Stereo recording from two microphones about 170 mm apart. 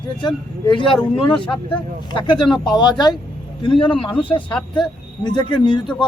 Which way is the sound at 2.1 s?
25° left (ahead or behind).